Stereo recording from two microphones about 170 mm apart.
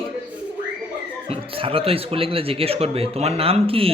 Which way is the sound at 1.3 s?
30° right (ahead or behind).